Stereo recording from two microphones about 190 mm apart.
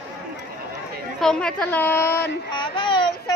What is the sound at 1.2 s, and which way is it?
Speech, 5° left (ahead or behind).